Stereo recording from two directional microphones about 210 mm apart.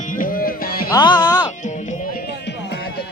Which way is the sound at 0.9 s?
20° left (ahead or behind).